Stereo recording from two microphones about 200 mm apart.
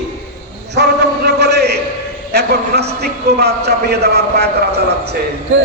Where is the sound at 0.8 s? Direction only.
55° right (ahead or behind).